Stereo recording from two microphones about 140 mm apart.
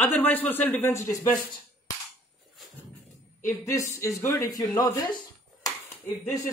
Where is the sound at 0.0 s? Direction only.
10° left (ahead or behind).